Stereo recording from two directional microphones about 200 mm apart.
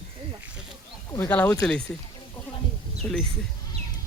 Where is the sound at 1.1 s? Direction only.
10° left (ahead or behind).